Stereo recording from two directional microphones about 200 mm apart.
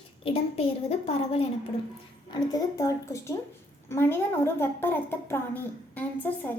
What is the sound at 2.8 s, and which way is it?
A woman's voice, 15° left (ahead or behind).